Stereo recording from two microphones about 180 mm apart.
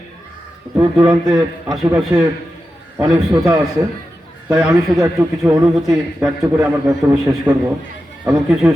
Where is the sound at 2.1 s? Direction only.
15° right (ahead or behind).